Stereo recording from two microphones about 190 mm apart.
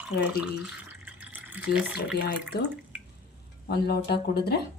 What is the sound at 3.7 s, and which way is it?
Speech, 55° left (ahead or behind).